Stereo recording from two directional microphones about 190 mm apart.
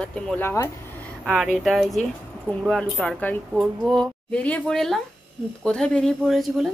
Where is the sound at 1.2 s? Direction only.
Centre (ahead or behind).